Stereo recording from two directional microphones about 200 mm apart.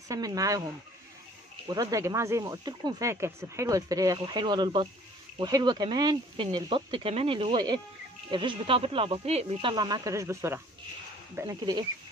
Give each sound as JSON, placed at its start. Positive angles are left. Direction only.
{"t": 0.1, "sound": "speech", "side_deg": -15}
{"t": 1.7, "sound": "speech", "side_deg": -15}